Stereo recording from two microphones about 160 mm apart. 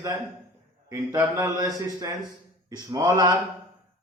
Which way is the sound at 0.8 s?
20° right (ahead or behind).